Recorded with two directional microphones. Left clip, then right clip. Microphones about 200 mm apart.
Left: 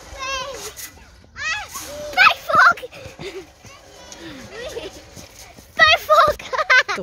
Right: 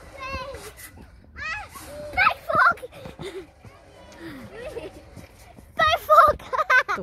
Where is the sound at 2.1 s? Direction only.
25° left (ahead or behind).